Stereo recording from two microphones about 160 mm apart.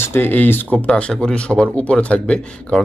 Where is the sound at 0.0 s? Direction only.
15° left (ahead or behind).